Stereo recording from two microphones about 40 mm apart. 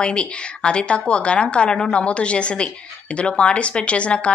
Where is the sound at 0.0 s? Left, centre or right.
Left.